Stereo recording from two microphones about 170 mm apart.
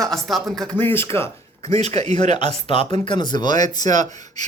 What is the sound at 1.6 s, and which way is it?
Speech, 40° right (ahead or behind).